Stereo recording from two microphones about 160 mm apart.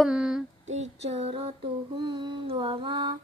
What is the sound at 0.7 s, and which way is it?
Child singing, 45° right (ahead or behind).